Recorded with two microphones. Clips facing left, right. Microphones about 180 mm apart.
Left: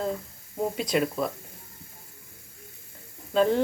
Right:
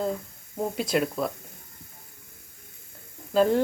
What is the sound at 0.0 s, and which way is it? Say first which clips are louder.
A woman's voice: right 1 dB; centre (ahead or behind).